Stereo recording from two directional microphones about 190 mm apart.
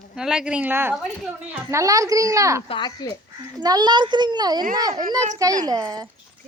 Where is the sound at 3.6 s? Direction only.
20° right (ahead or behind).